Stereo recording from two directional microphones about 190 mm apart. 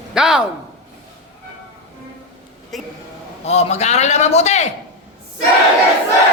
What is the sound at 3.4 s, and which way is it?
A man's voice, 35° left (ahead or behind).